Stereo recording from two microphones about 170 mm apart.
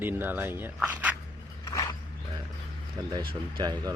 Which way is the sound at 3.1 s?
30° right (ahead or behind).